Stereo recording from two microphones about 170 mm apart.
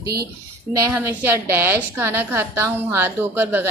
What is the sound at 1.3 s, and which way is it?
A woman's voice, 10° right (ahead or behind).